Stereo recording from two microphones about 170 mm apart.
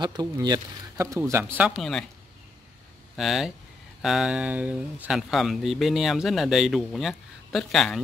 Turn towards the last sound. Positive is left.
turn(degrees=5)  # may be behind; listen again after turning